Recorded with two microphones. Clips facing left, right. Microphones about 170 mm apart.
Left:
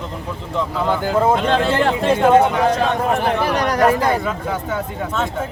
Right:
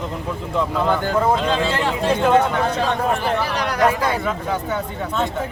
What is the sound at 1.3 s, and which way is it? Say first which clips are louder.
Speech: left 3 dB; 60° left (ahead or behind).